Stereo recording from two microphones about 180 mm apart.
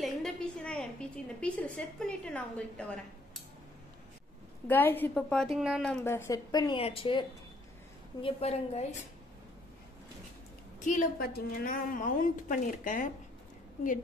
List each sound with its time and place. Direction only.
0.0 s a woman's voice: 5° left (ahead or behind)
4.6 s a woman's voice: 10° left (ahead or behind); by 8.8 s 35° left (ahead or behind)
10.8 s a woman's voice: 45° left (ahead or behind)